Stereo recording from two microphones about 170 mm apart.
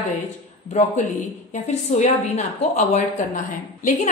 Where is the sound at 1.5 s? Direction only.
45° left (ahead or behind).